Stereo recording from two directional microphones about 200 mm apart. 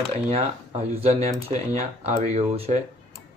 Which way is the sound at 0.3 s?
30° right (ahead or behind).